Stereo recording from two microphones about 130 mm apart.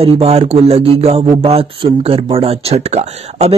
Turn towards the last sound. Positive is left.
turn(degrees=-55)  # may be behind; listen again after turning